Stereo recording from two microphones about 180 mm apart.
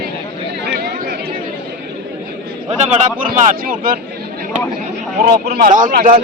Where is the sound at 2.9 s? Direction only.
45° right (ahead or behind).